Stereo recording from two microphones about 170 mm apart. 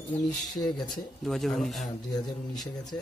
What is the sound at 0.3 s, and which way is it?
Speech, 5° left (ahead or behind).